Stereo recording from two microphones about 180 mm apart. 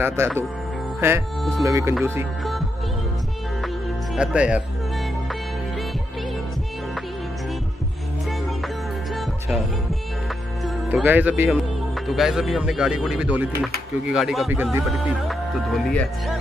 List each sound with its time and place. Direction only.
0.0 s speech: 15° right (ahead or behind)
4.1 s speech: 5° right (ahead or behind)
10.9 s speech: 10° right (ahead or behind)